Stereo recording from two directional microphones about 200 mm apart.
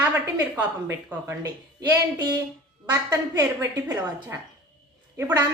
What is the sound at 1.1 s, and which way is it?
A woman's voice, 15° right (ahead or behind).